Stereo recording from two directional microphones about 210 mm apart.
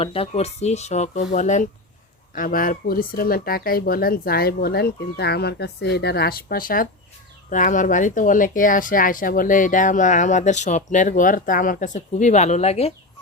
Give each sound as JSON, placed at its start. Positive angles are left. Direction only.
{"t": 0.0, "sound": "speech", "side_deg": 25}